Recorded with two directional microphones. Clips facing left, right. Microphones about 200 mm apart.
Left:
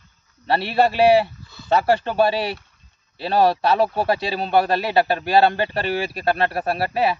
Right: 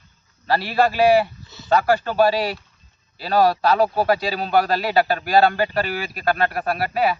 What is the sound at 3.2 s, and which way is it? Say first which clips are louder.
Speech: even; 25° left (ahead or behind).